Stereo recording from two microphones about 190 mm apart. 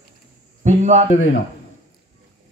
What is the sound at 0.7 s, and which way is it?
Speech, 35° right (ahead or behind).